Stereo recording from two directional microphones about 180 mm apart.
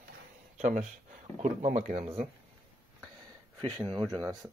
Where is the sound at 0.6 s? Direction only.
45° right (ahead or behind).